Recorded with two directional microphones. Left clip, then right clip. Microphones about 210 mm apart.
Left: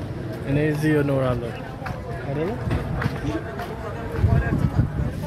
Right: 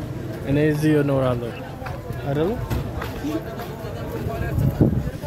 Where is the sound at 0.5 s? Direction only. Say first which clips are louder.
Right 3 dB; 30° right (ahead or behind).